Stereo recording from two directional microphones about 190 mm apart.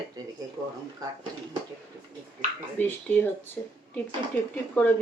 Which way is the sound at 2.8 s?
10° left (ahead or behind).